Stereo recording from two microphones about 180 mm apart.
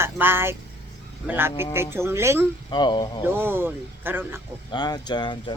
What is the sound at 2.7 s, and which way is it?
Speech, 25° left (ahead or behind).